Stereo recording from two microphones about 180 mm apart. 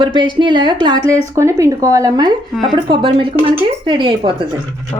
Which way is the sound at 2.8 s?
25° right (ahead or behind).